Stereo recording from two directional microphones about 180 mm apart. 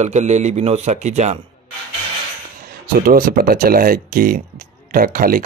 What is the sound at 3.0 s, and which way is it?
Speech, 55° right (ahead or behind).